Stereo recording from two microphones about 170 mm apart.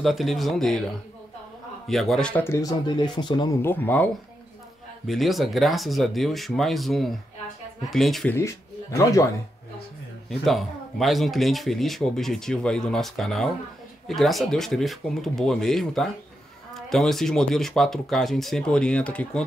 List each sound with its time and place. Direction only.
0.0 s speech: centre (ahead or behind)
1.9 s speech: centre (ahead or behind); by 3.5 s 25° left (ahead or behind)
3.6 s speech: 10° left (ahead or behind)
5.0 s speech: centre (ahead or behind)
8.4 s speech: 20° left (ahead or behind)
10.4 s speech: centre (ahead or behind)